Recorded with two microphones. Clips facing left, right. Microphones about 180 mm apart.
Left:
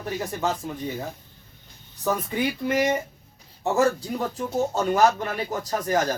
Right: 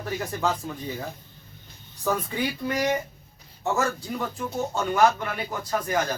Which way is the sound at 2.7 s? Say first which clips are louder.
Left 3 dB; 25° left (ahead or behind).